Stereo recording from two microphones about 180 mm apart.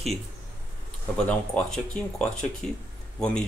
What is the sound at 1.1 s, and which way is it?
Speech, 5° left (ahead or behind).